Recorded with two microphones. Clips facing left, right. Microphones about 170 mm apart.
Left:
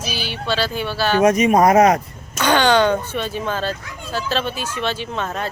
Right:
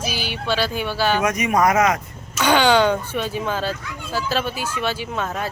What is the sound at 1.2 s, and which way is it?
Speech, 30° left (ahead or behind).